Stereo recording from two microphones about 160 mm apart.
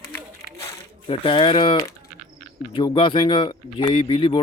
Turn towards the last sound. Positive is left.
turn(degrees=30)  # may be behind; listen again after turning